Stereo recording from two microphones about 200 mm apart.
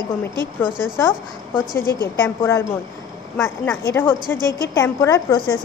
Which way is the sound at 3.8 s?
10° left (ahead or behind).